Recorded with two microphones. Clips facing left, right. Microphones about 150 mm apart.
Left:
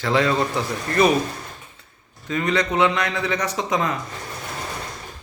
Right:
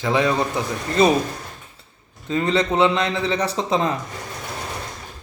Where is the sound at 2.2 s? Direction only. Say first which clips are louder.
Right 2 dB; 25° right (ahead or behind).